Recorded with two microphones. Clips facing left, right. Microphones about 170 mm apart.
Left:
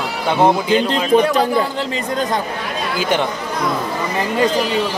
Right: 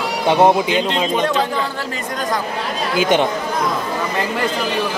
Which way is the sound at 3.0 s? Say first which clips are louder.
Right 3 dB; 20° right (ahead or behind).